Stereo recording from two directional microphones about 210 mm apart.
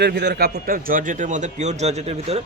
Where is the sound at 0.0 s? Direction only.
50° right (ahead or behind).